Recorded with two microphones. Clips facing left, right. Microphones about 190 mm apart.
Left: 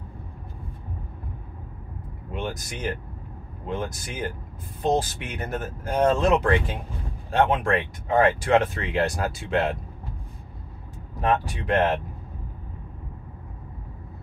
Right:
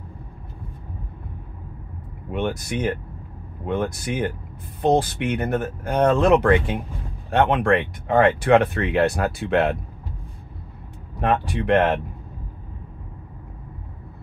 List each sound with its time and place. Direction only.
2.3 s speech: 60° right (ahead or behind)
11.1 s speech: 60° right (ahead or behind)